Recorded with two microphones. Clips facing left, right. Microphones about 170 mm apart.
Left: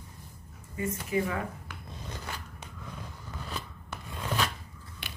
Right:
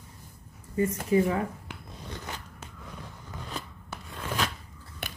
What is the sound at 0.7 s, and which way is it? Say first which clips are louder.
Speech: right 6 dB; 35° right (ahead or behind).